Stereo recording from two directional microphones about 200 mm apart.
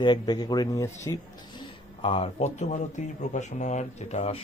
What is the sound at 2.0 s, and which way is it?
Speech, 30° left (ahead or behind).